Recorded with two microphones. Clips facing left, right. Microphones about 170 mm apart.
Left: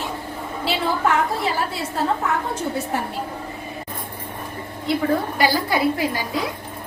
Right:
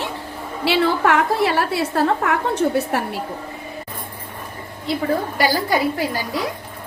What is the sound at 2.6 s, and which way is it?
Speech, 90° right.